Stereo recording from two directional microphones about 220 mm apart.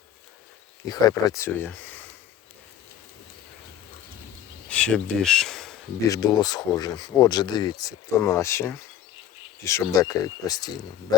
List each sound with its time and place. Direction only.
0.9 s speech: 15° left (ahead or behind)
4.7 s speech: 5° left (ahead or behind)
6.1 s speech: 15° left (ahead or behind)